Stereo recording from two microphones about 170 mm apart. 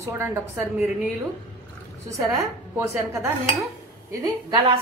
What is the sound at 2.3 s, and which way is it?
A woman's voice, 20° right (ahead or behind).